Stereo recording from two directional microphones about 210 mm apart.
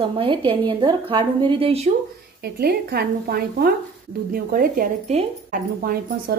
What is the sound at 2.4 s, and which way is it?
Speech, 50° right (ahead or behind).